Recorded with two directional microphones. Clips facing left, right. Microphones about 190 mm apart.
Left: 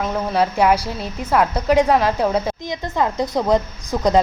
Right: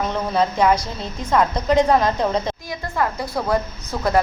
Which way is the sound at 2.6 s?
20° left (ahead or behind).